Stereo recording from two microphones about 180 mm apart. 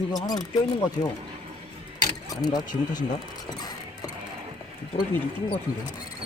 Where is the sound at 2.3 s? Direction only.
20° left (ahead or behind).